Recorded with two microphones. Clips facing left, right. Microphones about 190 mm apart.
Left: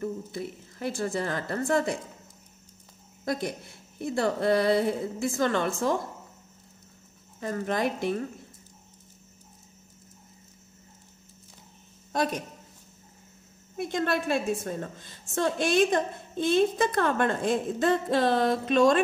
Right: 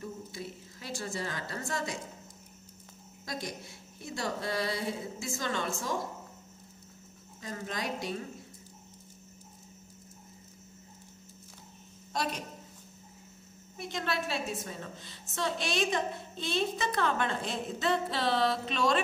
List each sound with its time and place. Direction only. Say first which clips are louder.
0.0 s a woman's voice: left 8 dB; 55° left (ahead or behind)
3.3 s a woman's voice: left 9 dB; 55° left (ahead or behind)
7.3 s a woman's voice: left 9 dB; 55° left (ahead or behind)
12.1 s speech: left 6 dB; 50° left (ahead or behind)
13.7 s a woman's voice: left 7 dB; 50° left (ahead or behind)